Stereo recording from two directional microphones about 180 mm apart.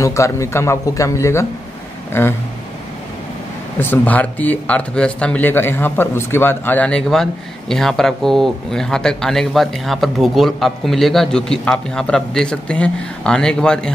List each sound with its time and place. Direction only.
0.0 s speech: 15° left (ahead or behind)
3.8 s speech: 10° left (ahead or behind)